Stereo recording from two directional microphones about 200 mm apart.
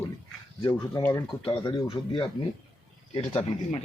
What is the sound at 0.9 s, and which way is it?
Speech, 15° left (ahead or behind).